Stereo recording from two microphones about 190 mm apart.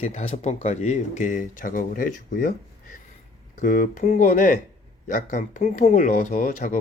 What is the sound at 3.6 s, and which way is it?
Speech, 45° left (ahead or behind).